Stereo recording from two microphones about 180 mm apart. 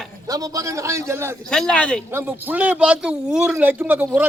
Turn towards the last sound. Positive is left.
turn(degrees=-10)  # may be behind; listen again after turning